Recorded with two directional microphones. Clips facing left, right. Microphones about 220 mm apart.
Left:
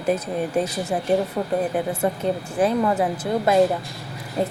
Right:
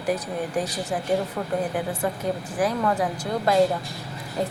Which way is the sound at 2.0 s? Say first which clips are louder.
Left 4 dB; 25° left (ahead or behind).